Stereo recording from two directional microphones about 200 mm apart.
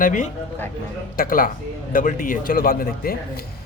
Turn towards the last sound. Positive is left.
turn(degrees=45)  # may be behind; listen again after turning